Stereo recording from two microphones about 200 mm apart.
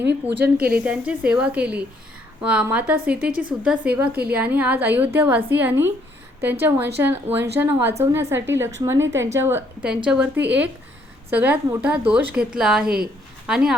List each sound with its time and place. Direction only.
0.0 s a woman's voice: 60° right (ahead or behind)
0.8 s a woman's voice: 5° right (ahead or behind)